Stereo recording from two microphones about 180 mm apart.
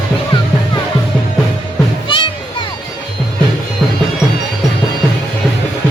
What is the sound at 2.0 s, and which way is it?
Music, 25° left (ahead or behind).